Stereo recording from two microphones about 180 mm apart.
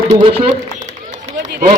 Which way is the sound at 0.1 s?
35° right (ahead or behind).